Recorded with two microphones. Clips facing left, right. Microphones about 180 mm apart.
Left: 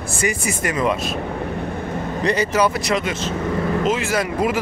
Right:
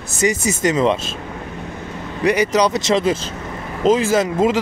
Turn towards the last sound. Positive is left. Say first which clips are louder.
# right 4 dB
turn(degrees=-25)  # may be behind; listen again after turning